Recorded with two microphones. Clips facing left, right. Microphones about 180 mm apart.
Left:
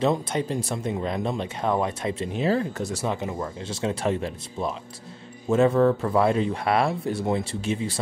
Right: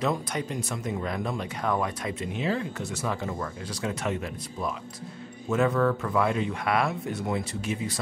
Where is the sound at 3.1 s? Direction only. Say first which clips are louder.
Left 3 dB; 20° left (ahead or behind).